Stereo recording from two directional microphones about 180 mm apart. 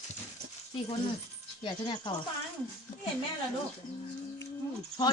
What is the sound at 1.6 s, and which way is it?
Speech, 25° left (ahead or behind).